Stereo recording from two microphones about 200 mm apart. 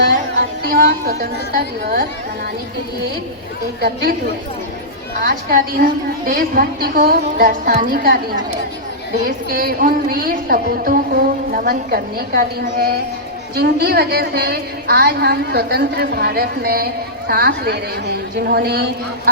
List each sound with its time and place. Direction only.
0.7 s speech: 50° right (ahead or behind)
3.8 s speech: 55° right (ahead or behind)
5.2 s speech: 45° right (ahead or behind)
9.2 s speech: 50° right (ahead or behind)